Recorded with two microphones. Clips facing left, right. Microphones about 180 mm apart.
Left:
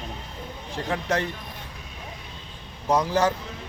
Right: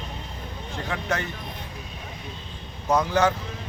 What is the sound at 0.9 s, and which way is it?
Speech, 30° left (ahead or behind).